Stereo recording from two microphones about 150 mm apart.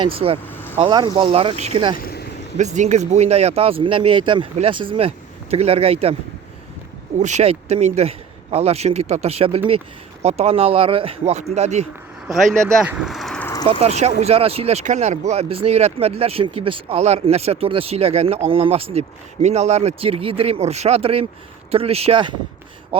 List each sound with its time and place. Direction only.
0.0 s speech: 40° right (ahead or behind)
0.4 s vehicle: 15° left (ahead or behind)
0.8 s speech: 30° right (ahead or behind)
2.0 s vehicle: 90° left
2.6 s a man's voice: 50° right (ahead or behind)
7.2 s a man's voice: 50° right (ahead or behind)
12.3 s speech: centre (ahead or behind)
13.4 s a sound: 20° left (ahead or behind)
13.7 s speech: 45° right (ahead or behind)